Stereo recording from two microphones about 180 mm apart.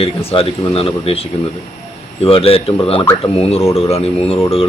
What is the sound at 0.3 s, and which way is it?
Speech, 30° left (ahead or behind).